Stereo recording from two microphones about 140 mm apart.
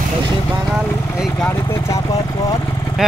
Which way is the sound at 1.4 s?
20° left (ahead or behind).